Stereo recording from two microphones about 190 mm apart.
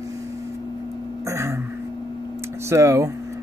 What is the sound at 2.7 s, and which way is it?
Speech, 15° right (ahead or behind).